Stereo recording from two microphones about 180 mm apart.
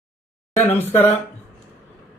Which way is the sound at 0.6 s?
10° left (ahead or behind).